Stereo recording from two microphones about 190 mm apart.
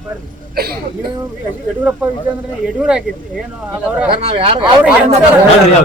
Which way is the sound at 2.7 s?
5° right (ahead or behind).